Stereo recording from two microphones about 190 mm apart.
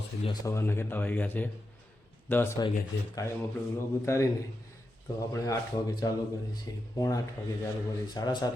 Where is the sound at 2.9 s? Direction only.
70° left (ahead or behind).